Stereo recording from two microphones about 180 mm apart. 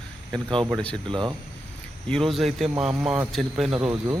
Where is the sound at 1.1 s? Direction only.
25° right (ahead or behind).